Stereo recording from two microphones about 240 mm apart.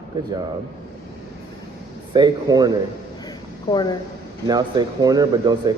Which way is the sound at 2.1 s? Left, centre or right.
Centre.